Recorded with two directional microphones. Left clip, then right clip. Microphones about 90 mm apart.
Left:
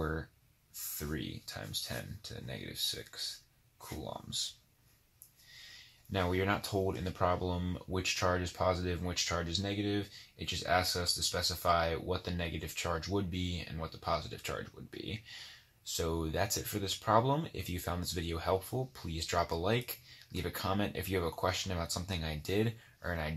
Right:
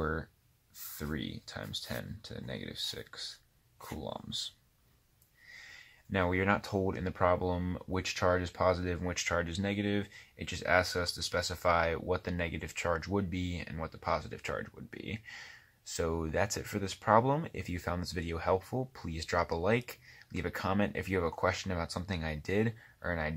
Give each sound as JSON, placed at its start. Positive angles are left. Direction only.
{"t": 0.7, "sound": "speech", "side_deg": -30}
{"t": 6.1, "sound": "speech", "side_deg": -10}
{"t": 6.6, "sound": "speech", "side_deg": -25}
{"t": 9.6, "sound": "speech", "side_deg": -10}
{"t": 10.4, "sound": "speech", "side_deg": -20}
{"t": 12.9, "sound": "speech", "side_deg": -20}
{"t": 15.8, "sound": "speech", "side_deg": -20}
{"t": 17.2, "sound": "speech", "side_deg": -10}